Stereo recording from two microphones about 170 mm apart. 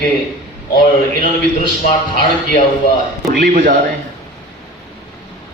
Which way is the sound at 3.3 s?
55° right (ahead or behind).